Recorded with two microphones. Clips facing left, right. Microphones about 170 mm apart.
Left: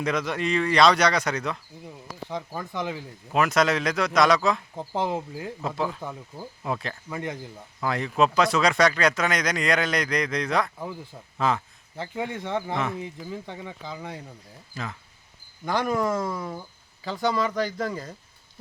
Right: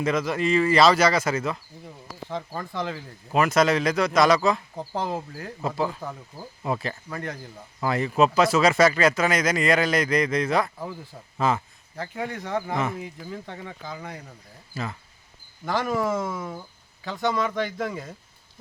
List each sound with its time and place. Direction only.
0.0 s speech: centre (ahead or behind)
2.3 s speech: 10° left (ahead or behind)
3.2 s speech: centre (ahead or behind)
4.8 s speech: 20° left (ahead or behind)
5.4 s speech: centre (ahead or behind)
7.1 s speech: 20° left (ahead or behind)
7.8 s speech: centre (ahead or behind)
11.9 s speech: 20° left (ahead or behind)
12.7 s speech: centre (ahead or behind)
13.3 s speech: 15° left (ahead or behind)
14.8 s speech: 5° right (ahead or behind)